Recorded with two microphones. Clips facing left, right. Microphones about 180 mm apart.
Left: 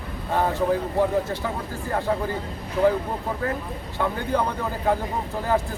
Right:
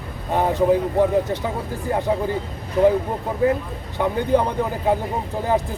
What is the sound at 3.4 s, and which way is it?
A man's voice, 20° right (ahead or behind).